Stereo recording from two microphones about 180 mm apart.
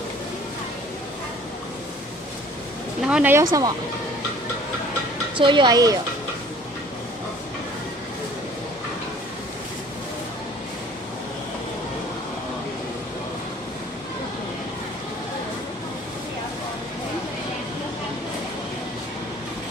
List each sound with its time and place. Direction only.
3.1 s speech: 10° right (ahead or behind)
5.4 s speech: 25° right (ahead or behind)